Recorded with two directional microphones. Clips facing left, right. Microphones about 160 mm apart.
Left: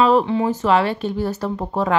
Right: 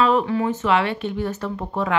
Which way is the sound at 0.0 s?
30° left (ahead or behind).